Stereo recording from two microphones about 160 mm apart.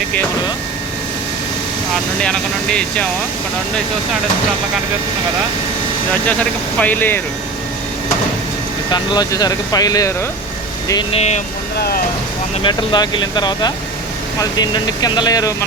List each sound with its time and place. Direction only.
2.2 s speech: 5° left (ahead or behind)
6.7 s speech: 10° left (ahead or behind)
8.9 s speech: 25° left (ahead or behind)
11.1 s speech: 45° left (ahead or behind)
11.8 s speech: 75° left (ahead or behind)
12.6 s speech: 30° left (ahead or behind)